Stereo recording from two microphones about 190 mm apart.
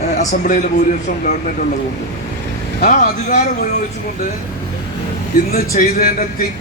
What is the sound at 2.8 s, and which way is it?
Speech, 45° left (ahead or behind).